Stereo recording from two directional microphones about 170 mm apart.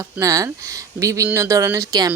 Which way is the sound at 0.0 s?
20° right (ahead or behind).